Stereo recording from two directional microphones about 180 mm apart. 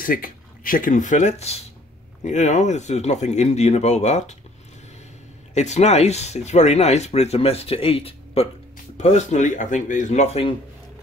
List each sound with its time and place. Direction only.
0.0 s speech: 50° left (ahead or behind)
5.5 s speech: 40° left (ahead or behind)